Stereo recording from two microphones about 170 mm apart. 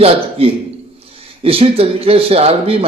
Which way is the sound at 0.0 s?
35° right (ahead or behind).